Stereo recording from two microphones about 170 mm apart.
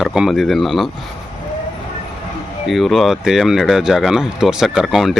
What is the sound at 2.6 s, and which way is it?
Speech, centre (ahead or behind).